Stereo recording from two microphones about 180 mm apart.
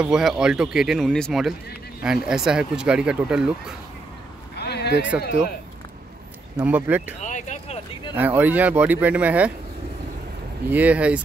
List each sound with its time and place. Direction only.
0.0 s speech: 5° right (ahead or behind)
4.6 s a sound: 65° left (ahead or behind)
5.1 s speech: 5° right (ahead or behind)
6.5 s speech: 10° right (ahead or behind)
7.2 s a sound: 45° left (ahead or behind)
8.2 s speech: 10° right (ahead or behind)
10.7 s speech: 10° right (ahead or behind)